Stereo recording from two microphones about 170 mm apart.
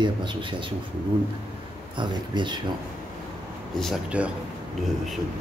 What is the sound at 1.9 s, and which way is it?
Speech, 25° right (ahead or behind).